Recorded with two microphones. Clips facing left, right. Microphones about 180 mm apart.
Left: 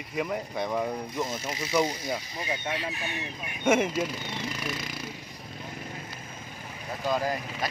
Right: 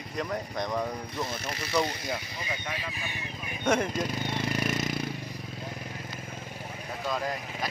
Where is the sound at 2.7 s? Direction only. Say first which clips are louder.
Left 4 dB; 70° left (ahead or behind).